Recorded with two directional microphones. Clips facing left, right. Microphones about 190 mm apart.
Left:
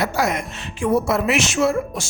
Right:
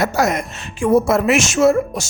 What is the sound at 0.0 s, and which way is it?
Speech, 45° right (ahead or behind).